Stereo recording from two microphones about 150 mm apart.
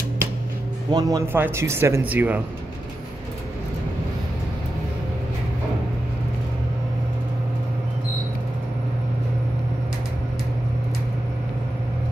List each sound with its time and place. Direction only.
0.8 s speech: 25° right (ahead or behind)